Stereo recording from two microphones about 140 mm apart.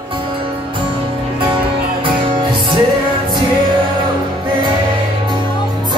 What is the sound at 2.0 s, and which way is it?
Music, 40° right (ahead or behind).